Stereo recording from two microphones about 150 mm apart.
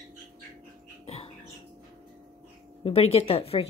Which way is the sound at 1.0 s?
40° left (ahead or behind).